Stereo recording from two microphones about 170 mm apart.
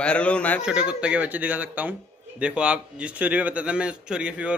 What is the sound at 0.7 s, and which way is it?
Speech, 5° right (ahead or behind).